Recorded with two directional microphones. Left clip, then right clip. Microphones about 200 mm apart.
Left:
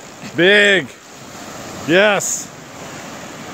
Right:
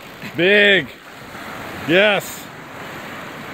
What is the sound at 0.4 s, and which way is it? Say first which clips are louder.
Speech: left 2 dB; 15° left (ahead or behind).